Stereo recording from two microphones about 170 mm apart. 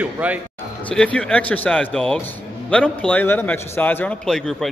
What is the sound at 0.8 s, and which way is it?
Speech, 5° left (ahead or behind).